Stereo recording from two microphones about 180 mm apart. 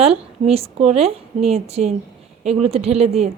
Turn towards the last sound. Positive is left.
turn(degrees=-35)  # may be behind; listen again after turning